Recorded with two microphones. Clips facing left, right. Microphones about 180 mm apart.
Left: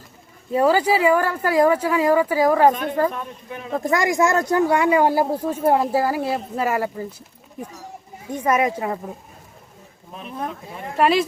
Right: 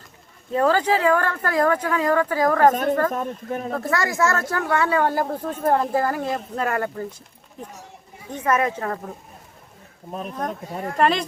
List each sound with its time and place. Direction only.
0.5 s speech: 10° left (ahead or behind)
3.1 s speech: 45° right (ahead or behind)
3.8 s speech: 15° left (ahead or behind)
8.3 s speech: 10° left (ahead or behind)
10.1 s speech: 40° right (ahead or behind)
10.9 s speech: 5° left (ahead or behind)